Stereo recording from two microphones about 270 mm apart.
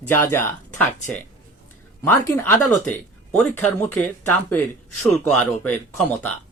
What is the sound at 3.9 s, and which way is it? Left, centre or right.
Speech, centre.